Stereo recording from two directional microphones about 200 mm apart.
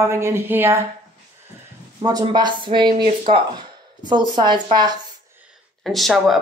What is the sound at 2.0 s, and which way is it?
Speech, 20° right (ahead or behind).